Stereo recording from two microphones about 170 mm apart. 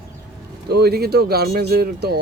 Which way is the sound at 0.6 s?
70° right (ahead or behind).